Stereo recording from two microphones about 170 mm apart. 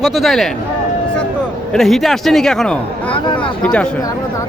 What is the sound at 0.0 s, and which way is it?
Speech, centre (ahead or behind).